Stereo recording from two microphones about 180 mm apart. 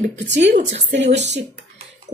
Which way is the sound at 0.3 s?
80° right.